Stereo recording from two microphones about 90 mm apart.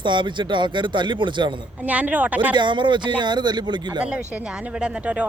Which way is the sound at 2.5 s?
60° right (ahead or behind).